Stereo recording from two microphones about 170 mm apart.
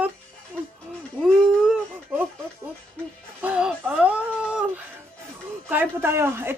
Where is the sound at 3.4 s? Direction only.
10° right (ahead or behind).